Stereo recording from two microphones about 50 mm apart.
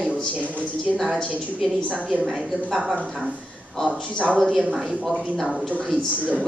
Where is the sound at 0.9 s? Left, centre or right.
Centre.